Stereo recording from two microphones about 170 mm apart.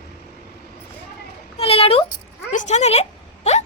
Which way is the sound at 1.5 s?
35° left (ahead or behind).